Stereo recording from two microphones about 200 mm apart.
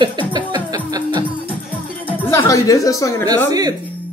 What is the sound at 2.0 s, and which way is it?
Music, 10° left (ahead or behind).